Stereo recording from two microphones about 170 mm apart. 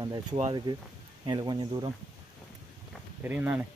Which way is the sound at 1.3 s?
25° right (ahead or behind).